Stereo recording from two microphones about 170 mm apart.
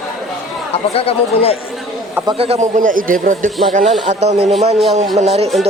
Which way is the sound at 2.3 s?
35° right (ahead or behind).